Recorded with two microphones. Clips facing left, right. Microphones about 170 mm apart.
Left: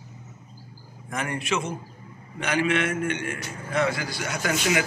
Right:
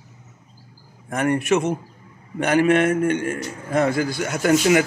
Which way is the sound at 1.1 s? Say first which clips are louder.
Right 9 dB; 55° right (ahead or behind).